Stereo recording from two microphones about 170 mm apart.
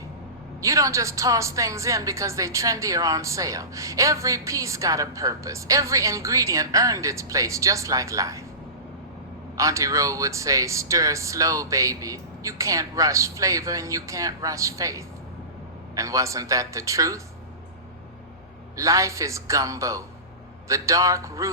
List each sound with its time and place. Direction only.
0.6 s a woman's voice: 20° right (ahead or behind)
9.6 s a woman's voice: 20° right (ahead or behind)
18.8 s a man's voice: 20° right (ahead or behind)